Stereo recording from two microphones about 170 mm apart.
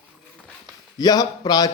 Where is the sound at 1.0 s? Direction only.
25° left (ahead or behind).